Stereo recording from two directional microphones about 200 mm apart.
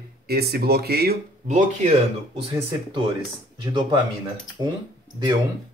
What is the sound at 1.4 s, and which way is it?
Speech, 40° right (ahead or behind).